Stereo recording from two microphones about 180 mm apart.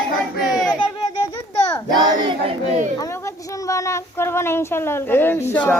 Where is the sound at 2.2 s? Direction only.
40° right (ahead or behind).